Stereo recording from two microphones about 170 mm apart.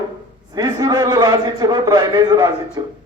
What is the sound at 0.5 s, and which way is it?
A man's voice, 25° right (ahead or behind).